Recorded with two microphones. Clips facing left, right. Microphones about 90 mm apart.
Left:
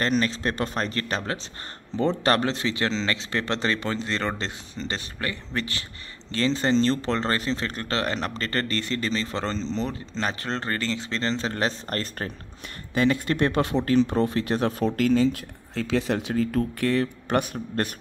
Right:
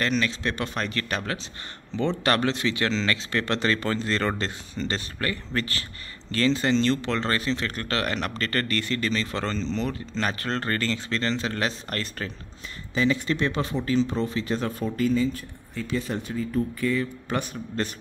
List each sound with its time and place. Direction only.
0.0 s speech: 35° left (ahead or behind)
12.9 s speech: 55° left (ahead or behind)